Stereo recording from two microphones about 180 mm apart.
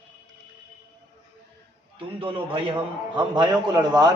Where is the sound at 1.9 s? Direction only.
30° right (ahead or behind).